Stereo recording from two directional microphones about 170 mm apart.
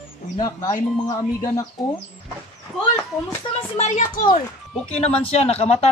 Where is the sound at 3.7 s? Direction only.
45° left (ahead or behind).